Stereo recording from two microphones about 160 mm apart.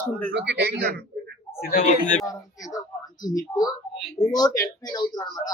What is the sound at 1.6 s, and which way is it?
Speech, 60° left (ahead or behind).